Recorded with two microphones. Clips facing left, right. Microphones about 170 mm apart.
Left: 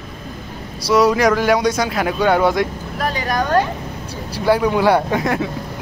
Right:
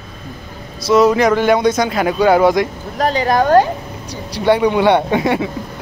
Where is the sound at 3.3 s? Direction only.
45° right (ahead or behind).